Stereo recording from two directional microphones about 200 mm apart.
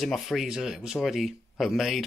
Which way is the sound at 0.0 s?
Centre (ahead or behind).